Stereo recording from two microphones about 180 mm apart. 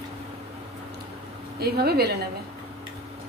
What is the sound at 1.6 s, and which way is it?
Speech, 60° right (ahead or behind).